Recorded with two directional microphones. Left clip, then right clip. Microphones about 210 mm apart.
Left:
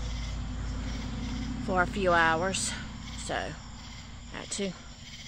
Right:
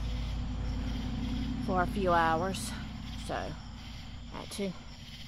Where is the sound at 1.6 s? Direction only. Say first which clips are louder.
Left 4 dB; 20° left (ahead or behind).